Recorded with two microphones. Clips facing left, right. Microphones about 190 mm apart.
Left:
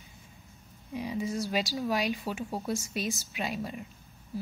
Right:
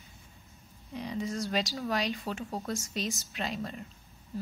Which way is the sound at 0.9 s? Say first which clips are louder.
Left 2 dB; 5° left (ahead or behind).